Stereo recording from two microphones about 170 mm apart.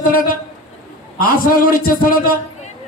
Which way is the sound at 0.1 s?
55° left (ahead or behind).